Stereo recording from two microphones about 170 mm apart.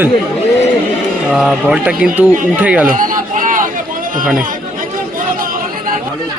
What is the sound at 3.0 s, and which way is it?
Run, 50° right (ahead or behind).